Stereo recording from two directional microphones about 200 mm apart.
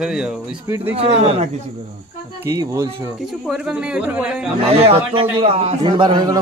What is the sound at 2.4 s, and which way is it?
Speech, 15° right (ahead or behind).